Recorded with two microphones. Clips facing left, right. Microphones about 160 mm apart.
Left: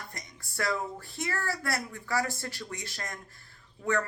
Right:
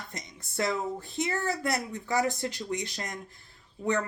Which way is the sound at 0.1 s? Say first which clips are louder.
Right 3 dB; 20° right (ahead or behind).